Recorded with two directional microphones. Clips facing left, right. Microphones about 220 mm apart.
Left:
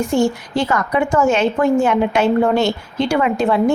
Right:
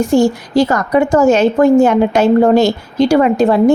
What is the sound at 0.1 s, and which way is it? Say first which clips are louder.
A woman's voice: right 5 dB; 40° right (ahead or behind).